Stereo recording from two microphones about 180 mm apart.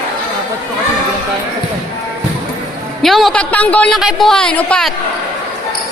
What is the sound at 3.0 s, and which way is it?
Speech, centre (ahead or behind).